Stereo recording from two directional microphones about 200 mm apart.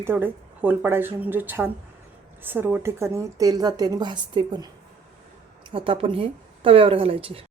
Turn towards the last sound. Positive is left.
turn(degrees=-25)  # may be behind; listen again after turning